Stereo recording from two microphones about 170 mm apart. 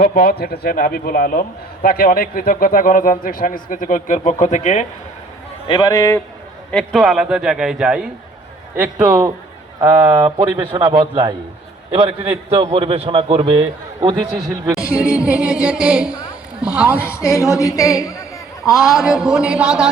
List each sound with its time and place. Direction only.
0.0 s a man's voice: 60° left (ahead or behind); by 4.9 s 45° left (ahead or behind)
5.6 s speech: 25° left (ahead or behind)
6.7 s a man's voice: centre (ahead or behind)
8.7 s a man's voice: 15° right (ahead or behind)
14.7 s a man's voice: 5° right (ahead or behind)
17.0 s speech: 15° left (ahead or behind)
18.8 s a man's voice: centre (ahead or behind)